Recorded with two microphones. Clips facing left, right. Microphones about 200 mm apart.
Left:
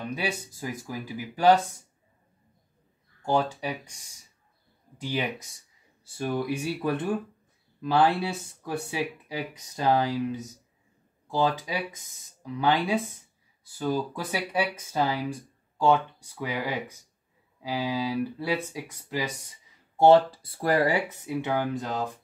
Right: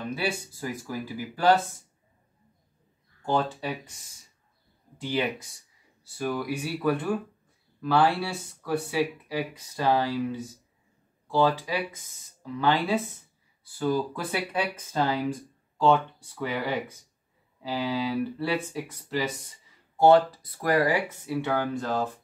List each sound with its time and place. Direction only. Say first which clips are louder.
0.1 s speech: right 1 dB; 15° left (ahead or behind)
3.3 s speech: left 1 dB; 10° left (ahead or behind)
5.0 s speech: right 2 dB; 15° left (ahead or behind)
6.1 s speech: left 1 dB; 25° left (ahead or behind)
20.0 s speech: left 1 dB; 25° left (ahead or behind)